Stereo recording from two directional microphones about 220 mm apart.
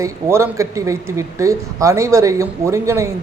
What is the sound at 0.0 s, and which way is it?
Speech, 15° right (ahead or behind).